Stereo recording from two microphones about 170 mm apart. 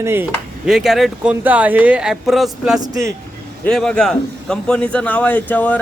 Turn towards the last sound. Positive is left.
turn(degrees=10)  # may be behind; listen again after turning